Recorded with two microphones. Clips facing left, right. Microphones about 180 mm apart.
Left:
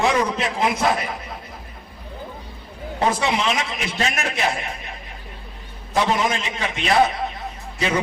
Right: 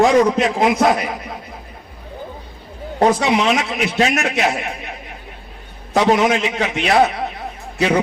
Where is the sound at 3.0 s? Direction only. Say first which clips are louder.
Right 6 dB; 65° right (ahead or behind).